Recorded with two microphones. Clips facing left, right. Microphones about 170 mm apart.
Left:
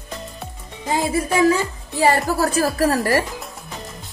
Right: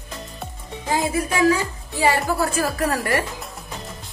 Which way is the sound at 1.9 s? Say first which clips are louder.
Left 2 dB; 40° left (ahead or behind).